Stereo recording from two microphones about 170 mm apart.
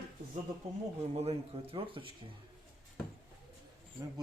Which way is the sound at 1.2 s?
35° right (ahead or behind).